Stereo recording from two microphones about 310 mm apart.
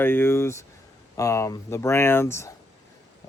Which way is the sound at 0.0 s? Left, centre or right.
Centre.